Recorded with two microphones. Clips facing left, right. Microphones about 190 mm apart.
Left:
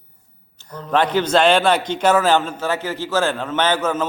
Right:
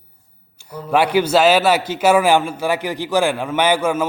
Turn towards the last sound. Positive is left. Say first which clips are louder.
# right 2 dB
turn(degrees=-10)  # may be behind; listen again after turning